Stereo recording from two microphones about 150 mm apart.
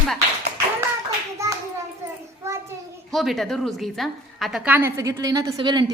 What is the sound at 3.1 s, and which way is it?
A woman's voice, centre (ahead or behind).